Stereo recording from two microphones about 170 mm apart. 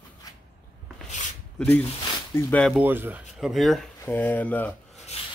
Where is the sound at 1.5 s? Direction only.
10° left (ahead or behind).